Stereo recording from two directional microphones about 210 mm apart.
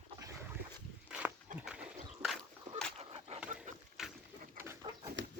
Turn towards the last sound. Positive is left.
turn(degrees=-15)  # may be behind; listen again after turning